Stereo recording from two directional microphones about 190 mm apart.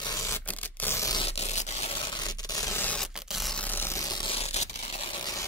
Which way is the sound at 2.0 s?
20° left (ahead or behind).